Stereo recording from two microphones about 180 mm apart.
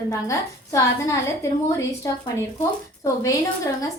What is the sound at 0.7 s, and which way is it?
A woman's voice, 15° left (ahead or behind).